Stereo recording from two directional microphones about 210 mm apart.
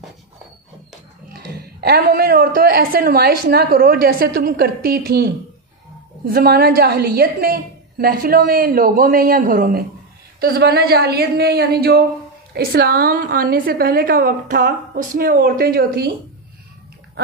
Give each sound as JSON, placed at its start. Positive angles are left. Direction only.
{"t": 1.3, "sound": "a woman's voice", "side_deg": -50}